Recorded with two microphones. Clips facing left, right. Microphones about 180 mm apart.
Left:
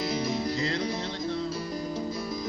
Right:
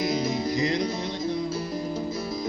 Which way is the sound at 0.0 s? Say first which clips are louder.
Right 3 dB; 15° right (ahead or behind).